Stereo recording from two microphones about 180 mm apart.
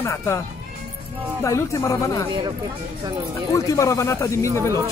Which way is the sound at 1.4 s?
15° left (ahead or behind).